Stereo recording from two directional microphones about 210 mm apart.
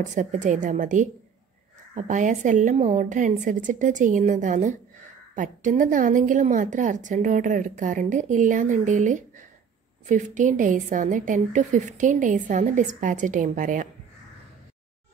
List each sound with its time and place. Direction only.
0.0 s a woman's voice: 35° right (ahead or behind)